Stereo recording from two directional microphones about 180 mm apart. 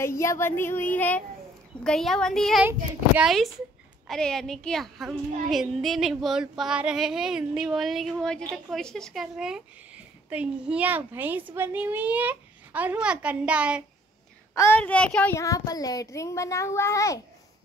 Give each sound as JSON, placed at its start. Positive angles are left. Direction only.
{"t": 0.0, "sound": "speech", "side_deg": 15}
{"t": 1.8, "sound": "a sound", "side_deg": 5}
{"t": 10.3, "sound": "a child's voice", "side_deg": -5}
{"t": 14.5, "sound": "a woman's voice", "side_deg": 15}
{"t": 14.8, "sound": "speech", "side_deg": 5}
{"t": 15.3, "sound": "speech", "side_deg": 20}